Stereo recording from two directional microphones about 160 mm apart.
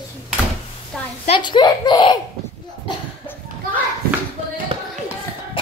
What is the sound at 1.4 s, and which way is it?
Speech, 30° left (ahead or behind).